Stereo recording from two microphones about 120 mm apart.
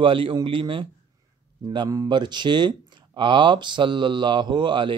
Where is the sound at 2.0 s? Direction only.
40° right (ahead or behind).